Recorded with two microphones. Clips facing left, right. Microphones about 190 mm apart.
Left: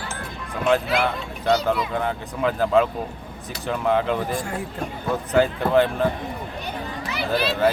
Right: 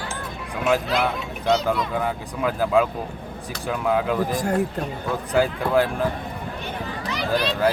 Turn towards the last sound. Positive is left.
turn(degrees=5)  # may be behind; listen again after turning